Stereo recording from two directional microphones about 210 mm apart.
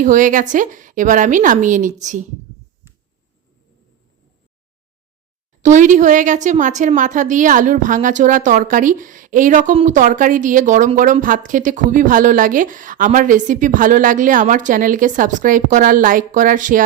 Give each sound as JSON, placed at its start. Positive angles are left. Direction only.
{"t": 0.0, "sound": "a woman's voice", "side_deg": -40}
{"t": 5.6, "sound": "a woman's voice", "side_deg": -35}